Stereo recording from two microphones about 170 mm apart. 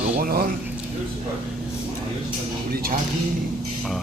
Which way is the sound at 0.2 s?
60° right (ahead or behind).